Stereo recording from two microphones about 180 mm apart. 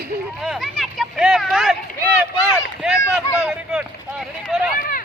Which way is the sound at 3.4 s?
5° right (ahead or behind).